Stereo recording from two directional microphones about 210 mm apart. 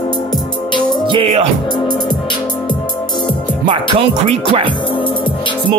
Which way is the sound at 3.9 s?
30° right (ahead or behind).